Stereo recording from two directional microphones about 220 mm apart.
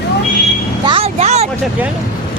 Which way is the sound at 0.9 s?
25° right (ahead or behind).